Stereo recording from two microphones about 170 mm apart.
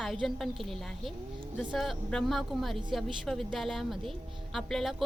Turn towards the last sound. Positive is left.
turn(degrees=0)  # may be behind; listen again after turning